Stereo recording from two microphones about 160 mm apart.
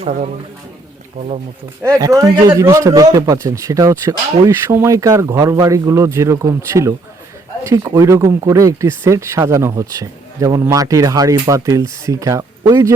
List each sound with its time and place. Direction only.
0.0 s a man's voice: 45° right (ahead or behind)
2.0 s speech: 20° right (ahead or behind)